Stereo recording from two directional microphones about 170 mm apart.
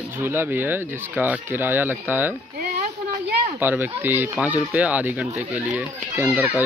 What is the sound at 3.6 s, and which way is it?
Speech, 10° right (ahead or behind).